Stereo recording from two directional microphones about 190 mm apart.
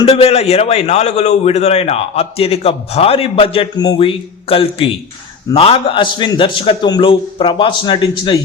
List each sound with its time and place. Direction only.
0.0 s a man's voice: 30° left (ahead or behind)